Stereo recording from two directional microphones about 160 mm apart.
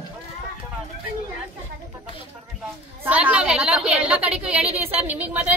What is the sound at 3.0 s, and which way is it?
A woman's voice, 10° right (ahead or behind).